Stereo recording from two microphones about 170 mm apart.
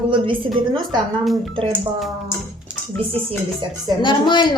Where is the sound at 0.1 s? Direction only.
30° right (ahead or behind).